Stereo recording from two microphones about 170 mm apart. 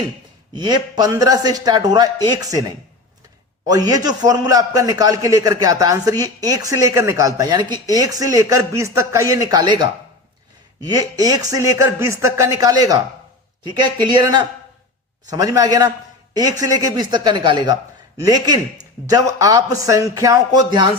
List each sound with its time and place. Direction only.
0.5 s a man's voice: 25° right (ahead or behind)
3.7 s a man's voice: 20° right (ahead or behind)